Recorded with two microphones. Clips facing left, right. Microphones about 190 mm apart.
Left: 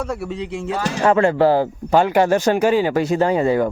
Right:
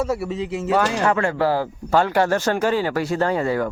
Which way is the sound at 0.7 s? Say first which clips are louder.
Right 5 dB; 65° right (ahead or behind).